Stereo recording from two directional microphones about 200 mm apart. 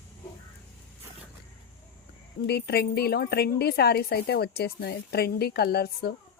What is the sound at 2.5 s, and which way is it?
Speech, 55° left (ahead or behind).